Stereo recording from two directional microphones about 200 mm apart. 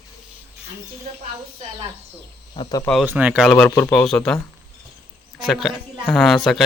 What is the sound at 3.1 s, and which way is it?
A man's voice, 10° right (ahead or behind).